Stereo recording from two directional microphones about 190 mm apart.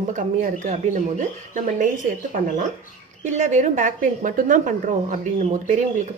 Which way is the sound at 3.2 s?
40° right (ahead or behind).